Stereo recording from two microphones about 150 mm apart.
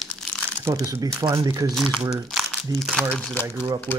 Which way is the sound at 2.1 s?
Centre (ahead or behind).